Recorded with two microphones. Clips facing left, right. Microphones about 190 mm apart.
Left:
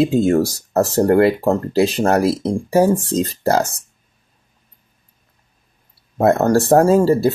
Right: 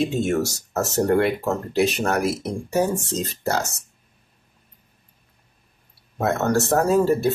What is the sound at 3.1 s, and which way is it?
Speech, 35° left (ahead or behind).